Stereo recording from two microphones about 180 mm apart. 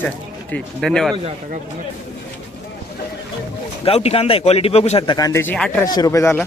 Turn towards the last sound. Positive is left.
turn(degrees=15)  # may be behind; listen again after turning